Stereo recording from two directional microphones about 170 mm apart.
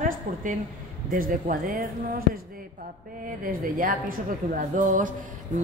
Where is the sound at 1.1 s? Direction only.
55° right (ahead or behind).